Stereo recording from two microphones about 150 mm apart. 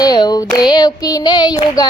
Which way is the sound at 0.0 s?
25° left (ahead or behind).